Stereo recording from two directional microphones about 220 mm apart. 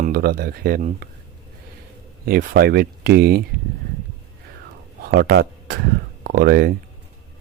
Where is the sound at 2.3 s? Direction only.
45° right (ahead or behind).